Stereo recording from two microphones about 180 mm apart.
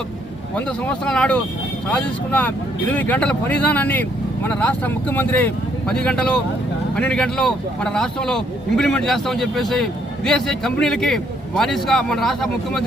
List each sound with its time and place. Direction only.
0.5 s a man's voice: 5° left (ahead or behind)